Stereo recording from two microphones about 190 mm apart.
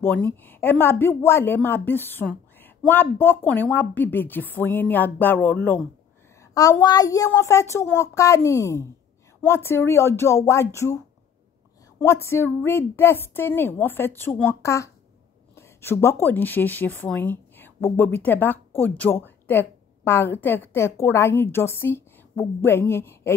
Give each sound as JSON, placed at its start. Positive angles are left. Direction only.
{"t": 0.0, "sound": "speech", "side_deg": 10}
{"t": 12.0, "sound": "speech", "side_deg": 15}